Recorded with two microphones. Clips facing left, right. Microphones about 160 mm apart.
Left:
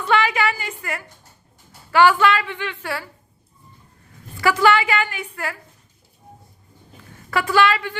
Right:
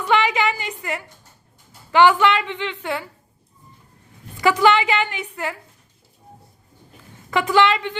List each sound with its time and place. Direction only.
0.0 s a sound: 20° right (ahead or behind)
1.9 s a woman's voice: 20° right (ahead or behind)
4.4 s a woman's voice: 20° right (ahead or behind)
7.3 s a woman's voice: 20° right (ahead or behind)